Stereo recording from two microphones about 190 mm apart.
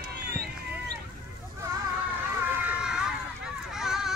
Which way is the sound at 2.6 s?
5° right (ahead or behind).